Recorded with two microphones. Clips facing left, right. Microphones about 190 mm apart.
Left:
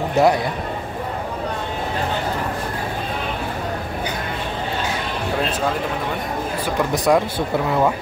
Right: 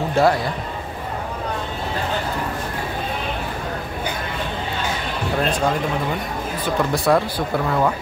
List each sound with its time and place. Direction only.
0.1 s a man's voice: 20° left (ahead or behind)
6.6 s speech: 15° left (ahead or behind)